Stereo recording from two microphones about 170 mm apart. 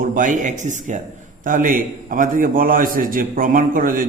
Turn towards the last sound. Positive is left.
turn(degrees=-55)  # may be behind; listen again after turning